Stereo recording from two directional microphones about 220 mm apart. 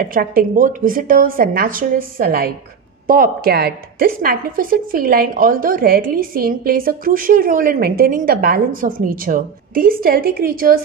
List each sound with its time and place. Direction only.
0.0 s a woman's voice: 40° right (ahead or behind)